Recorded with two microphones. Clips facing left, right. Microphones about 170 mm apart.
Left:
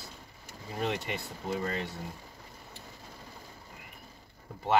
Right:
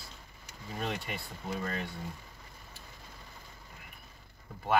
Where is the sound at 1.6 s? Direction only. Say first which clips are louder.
Left 2 dB; 25° left (ahead or behind).